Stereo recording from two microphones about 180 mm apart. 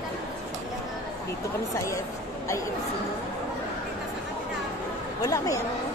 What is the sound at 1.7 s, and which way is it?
Speech, 15° left (ahead or behind).